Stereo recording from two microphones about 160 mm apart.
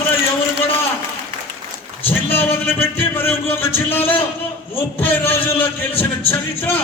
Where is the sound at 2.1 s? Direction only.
10° left (ahead or behind).